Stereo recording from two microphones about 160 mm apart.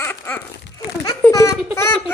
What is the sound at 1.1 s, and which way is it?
Baby laughter, 20° left (ahead or behind).